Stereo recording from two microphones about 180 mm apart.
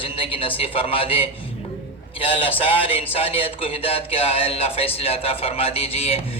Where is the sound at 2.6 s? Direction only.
30° left (ahead or behind).